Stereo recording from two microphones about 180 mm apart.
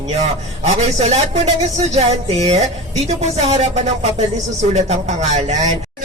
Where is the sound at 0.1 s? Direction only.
35° right (ahead or behind).